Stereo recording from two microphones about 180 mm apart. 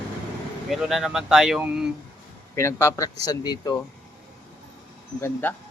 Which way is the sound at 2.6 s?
15° left (ahead or behind).